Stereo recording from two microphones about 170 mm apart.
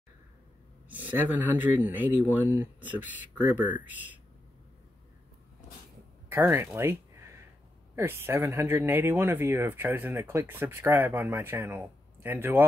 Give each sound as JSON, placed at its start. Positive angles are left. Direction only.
{"t": 0.8, "sound": "speech", "side_deg": -10}
{"t": 6.2, "sound": "a sound", "side_deg": -15}
{"t": 7.9, "sound": "speech", "side_deg": -15}